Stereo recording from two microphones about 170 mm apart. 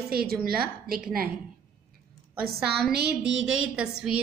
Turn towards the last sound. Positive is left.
turn(degrees=-5)  # may be behind; listen again after turning